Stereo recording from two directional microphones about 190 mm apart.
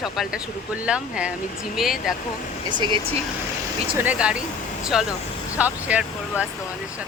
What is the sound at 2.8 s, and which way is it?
Speech, 25° right (ahead or behind).